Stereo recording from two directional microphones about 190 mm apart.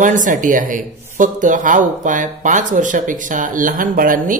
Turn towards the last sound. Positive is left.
turn(degrees=-45)  # may be behind; listen again after turning